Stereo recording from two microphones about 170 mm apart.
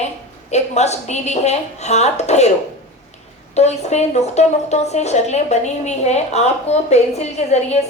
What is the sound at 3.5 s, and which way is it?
A woman's voice, 40° left (ahead or behind).